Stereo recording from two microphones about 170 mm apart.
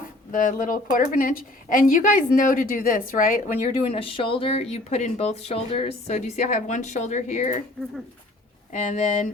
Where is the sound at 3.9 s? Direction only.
30° left (ahead or behind).